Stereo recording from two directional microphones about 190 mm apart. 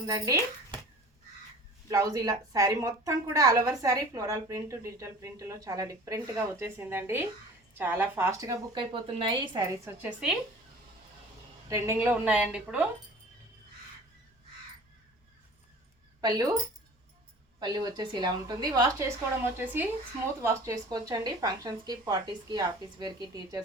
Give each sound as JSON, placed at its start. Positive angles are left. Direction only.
{"t": 0.0, "sound": "speech", "side_deg": -20}
{"t": 1.9, "sound": "a woman's voice", "side_deg": -15}
{"t": 11.7, "sound": "a woman's voice", "side_deg": -15}
{"t": 16.2, "sound": "a woman's voice", "side_deg": -20}
{"t": 17.6, "sound": "a woman's voice", "side_deg": -20}